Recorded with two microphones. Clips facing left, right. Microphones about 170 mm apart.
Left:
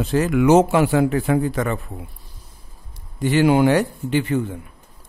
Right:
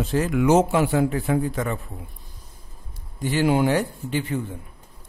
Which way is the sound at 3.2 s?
75° left (ahead or behind).